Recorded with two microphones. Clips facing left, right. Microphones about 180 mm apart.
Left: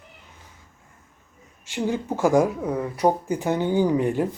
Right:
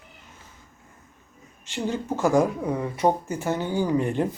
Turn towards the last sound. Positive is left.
turn(degrees=10)  # may be behind; listen again after turning